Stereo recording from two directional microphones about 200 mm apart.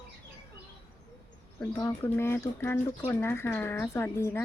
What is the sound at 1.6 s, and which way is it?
Speech, 15° left (ahead or behind).